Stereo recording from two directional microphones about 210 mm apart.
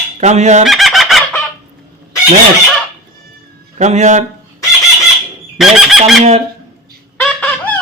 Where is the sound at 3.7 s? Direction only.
35° right (ahead or behind).